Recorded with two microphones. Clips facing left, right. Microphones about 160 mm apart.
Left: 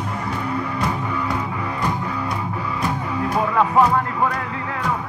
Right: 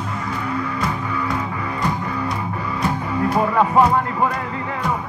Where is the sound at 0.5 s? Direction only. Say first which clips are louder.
Even; 20° left (ahead or behind).